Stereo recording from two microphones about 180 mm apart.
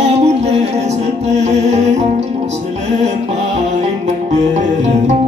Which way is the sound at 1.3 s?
40° right (ahead or behind).